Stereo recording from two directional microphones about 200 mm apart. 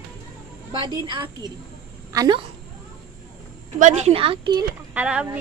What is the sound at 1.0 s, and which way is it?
Speech, 25° right (ahead or behind).